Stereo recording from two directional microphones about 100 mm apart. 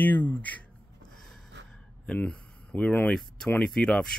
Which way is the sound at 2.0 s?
10° left (ahead or behind).